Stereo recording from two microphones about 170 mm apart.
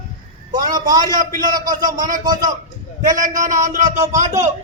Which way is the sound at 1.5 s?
55° right (ahead or behind).